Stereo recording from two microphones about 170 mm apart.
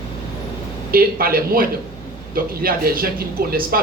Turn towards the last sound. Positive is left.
turn(degrees=-60)  # may be behind; listen again after turning